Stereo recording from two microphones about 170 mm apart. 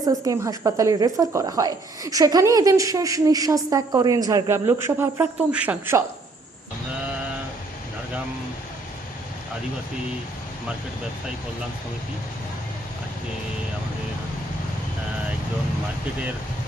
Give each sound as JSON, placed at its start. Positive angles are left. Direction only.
{"t": 0.0, "sound": "a woman's voice", "side_deg": -20}